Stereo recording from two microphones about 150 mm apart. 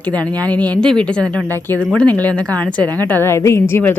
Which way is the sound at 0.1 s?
25° right (ahead or behind).